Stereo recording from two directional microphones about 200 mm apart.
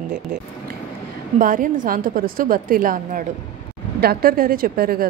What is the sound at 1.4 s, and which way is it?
Speech, 45° right (ahead or behind).